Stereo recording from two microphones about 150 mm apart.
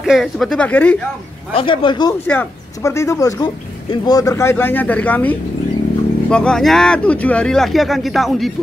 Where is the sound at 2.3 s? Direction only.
15° left (ahead or behind).